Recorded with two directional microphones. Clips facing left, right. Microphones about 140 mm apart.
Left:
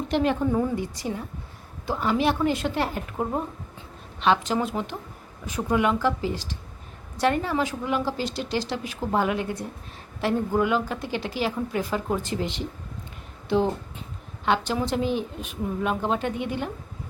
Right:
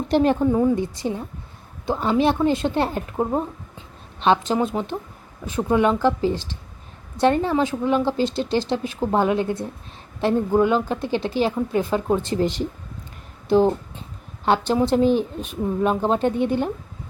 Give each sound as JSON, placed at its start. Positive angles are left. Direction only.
{"t": 0.1, "sound": "a woman's voice", "side_deg": -35}
{"t": 0.5, "sound": "a woman's voice", "side_deg": -20}